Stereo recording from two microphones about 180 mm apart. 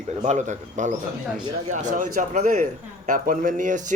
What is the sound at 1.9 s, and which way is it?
Speech, 45° right (ahead or behind).